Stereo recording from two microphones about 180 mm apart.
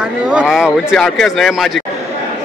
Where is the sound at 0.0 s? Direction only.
5° right (ahead or behind).